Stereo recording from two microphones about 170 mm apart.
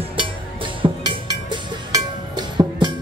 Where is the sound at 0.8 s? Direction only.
30° right (ahead or behind).